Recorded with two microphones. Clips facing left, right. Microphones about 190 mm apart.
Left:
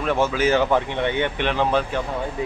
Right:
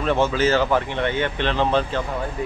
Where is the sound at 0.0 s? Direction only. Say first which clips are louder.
Right 1 dB; 5° left (ahead or behind).